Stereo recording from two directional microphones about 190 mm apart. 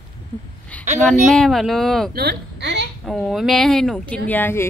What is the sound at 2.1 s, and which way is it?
Speech, 60° right (ahead or behind).